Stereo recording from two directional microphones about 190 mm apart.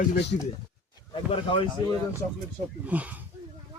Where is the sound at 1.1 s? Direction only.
30° left (ahead or behind).